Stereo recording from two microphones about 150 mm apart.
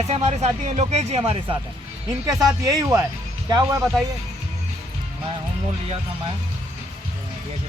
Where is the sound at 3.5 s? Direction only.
25° right (ahead or behind).